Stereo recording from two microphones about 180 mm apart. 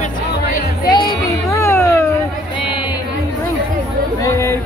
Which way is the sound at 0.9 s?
15° left (ahead or behind).